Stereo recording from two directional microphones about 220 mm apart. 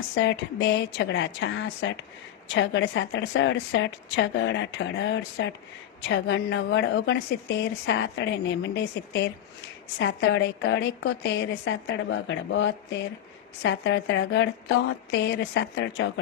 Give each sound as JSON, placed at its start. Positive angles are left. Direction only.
{"t": 0.1, "sound": "a woman's voice", "side_deg": 55}